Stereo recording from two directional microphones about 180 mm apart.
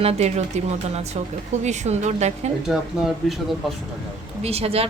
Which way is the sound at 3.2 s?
Centre (ahead or behind).